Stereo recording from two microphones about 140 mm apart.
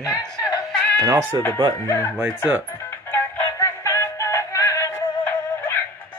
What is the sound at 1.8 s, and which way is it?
Speech, 20° left (ahead or behind).